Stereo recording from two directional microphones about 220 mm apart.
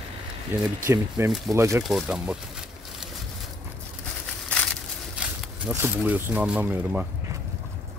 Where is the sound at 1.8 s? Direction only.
Centre (ahead or behind).